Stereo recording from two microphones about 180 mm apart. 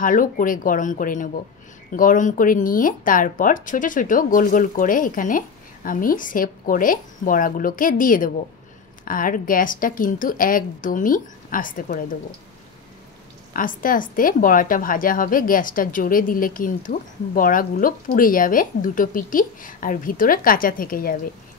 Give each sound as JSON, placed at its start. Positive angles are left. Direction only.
{"t": 0.0, "sound": "a woman's voice", "side_deg": 50}
{"t": 13.5, "sound": "a woman's voice", "side_deg": 50}